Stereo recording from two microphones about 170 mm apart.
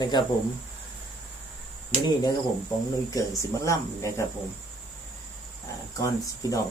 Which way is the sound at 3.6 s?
20° left (ahead or behind).